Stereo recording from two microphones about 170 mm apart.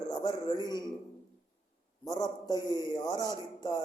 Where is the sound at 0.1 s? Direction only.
25° left (ahead or behind).